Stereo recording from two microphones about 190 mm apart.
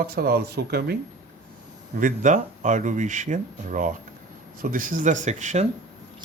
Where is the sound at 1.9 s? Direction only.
40° right (ahead or behind).